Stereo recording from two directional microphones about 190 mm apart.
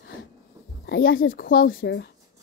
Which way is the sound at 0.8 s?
55° left (ahead or behind).